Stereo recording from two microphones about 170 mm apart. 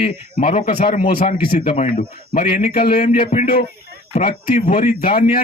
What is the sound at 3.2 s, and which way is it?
Speech, 40° left (ahead or behind).